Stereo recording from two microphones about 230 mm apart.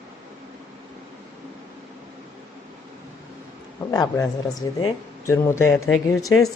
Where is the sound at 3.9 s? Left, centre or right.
Centre.